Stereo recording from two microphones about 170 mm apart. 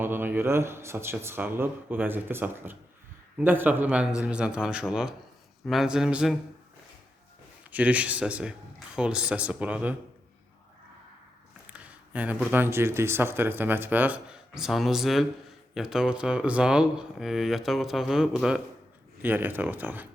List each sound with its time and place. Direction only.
0.0 s speech: 10° right (ahead or behind)
7.7 s speech: 10° right (ahead or behind)
11.7 s speech: 10° right (ahead or behind)